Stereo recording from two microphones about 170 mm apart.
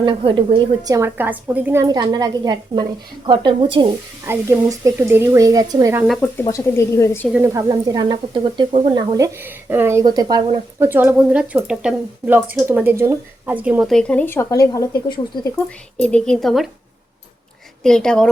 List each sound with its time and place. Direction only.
0.0 s speech: 30° right (ahead or behind)
0.9 s speech: 15° right (ahead or behind)
1.8 s speech: 25° right (ahead or behind)
4.3 s speech: 15° right (ahead or behind)
6.1 s a woman's voice: 10° left (ahead or behind)
7.3 s speech: 15° right (ahead or behind)
10.8 s speech: 10° right (ahead or behind)
13.8 s a woman's voice: 5° left (ahead or behind); by 15.6 s 20° left (ahead or behind)
16.0 s a woman's voice: 5° left (ahead or behind)
17.8 s a woman's voice: 5° left (ahead or behind)